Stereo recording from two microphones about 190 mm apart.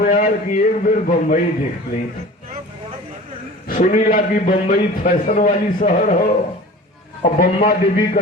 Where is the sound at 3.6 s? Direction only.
45° left (ahead or behind).